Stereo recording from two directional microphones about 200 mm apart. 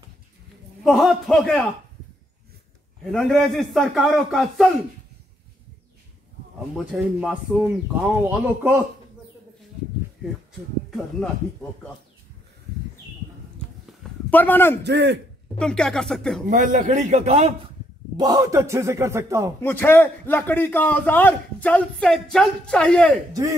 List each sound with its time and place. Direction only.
0.8 s a man's voice: centre (ahead or behind)
3.1 s a man's voice: centre (ahead or behind)
6.9 s speech: 5° right (ahead or behind)
14.3 s a man's voice: 10° left (ahead or behind)
14.8 s a man's voice: 55° right (ahead or behind)
15.6 s a man's voice: 5° left (ahead or behind)
16.4 s a man's voice: 40° right (ahead or behind)
18.1 s speech: 20° right (ahead or behind)
19.6 s a man's voice: 10° left (ahead or behind)